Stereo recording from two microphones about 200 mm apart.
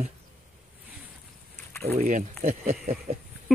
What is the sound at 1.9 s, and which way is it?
Speech, 40° right (ahead or behind).